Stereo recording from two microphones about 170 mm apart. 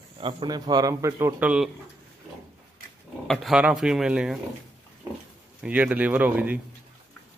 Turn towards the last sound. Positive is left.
turn(degrees=-10)  # may be behind; listen again after turning